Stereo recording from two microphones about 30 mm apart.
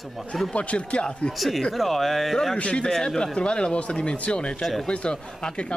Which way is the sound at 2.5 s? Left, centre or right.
Left.